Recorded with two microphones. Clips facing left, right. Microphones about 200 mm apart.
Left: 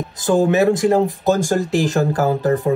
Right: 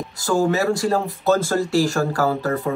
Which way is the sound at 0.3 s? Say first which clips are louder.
Left 4 dB; 20° left (ahead or behind).